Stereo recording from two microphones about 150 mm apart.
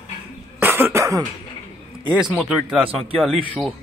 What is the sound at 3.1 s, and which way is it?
Speech, 5° left (ahead or behind).